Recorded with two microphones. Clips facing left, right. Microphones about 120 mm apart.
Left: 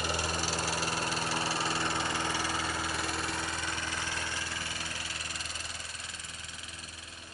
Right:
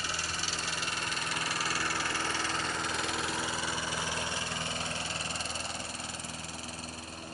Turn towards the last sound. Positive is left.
turn(degrees=-30)  # may be behind; listen again after turning